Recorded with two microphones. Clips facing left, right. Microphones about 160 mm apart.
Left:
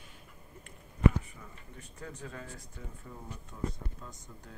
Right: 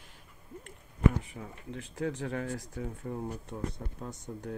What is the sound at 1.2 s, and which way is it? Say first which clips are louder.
Speech: right 8 dB; 75° right (ahead or behind).